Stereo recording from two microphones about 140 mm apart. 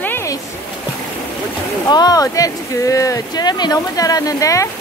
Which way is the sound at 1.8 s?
30° left (ahead or behind).